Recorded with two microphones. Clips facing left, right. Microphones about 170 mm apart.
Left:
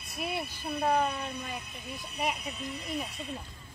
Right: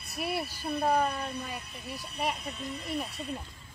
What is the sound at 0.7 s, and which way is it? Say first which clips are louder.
Speech: right 1 dB; centre (ahead or behind).